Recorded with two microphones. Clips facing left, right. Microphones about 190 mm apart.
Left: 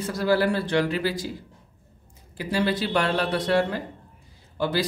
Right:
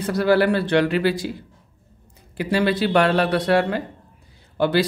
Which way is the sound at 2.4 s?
65° right (ahead or behind).